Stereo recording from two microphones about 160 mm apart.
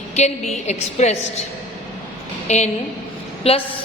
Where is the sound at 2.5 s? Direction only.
45° left (ahead or behind).